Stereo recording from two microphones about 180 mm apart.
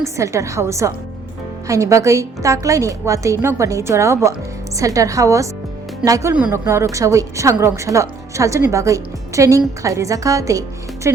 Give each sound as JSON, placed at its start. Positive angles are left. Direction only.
{"t": 0.0, "sound": "a woman's voice", "side_deg": -15}